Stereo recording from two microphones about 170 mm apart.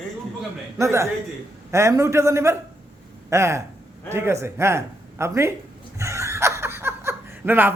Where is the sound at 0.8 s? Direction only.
15° right (ahead or behind).